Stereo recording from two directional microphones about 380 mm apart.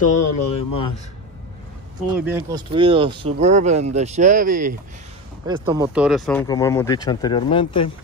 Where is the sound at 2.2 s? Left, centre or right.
Centre.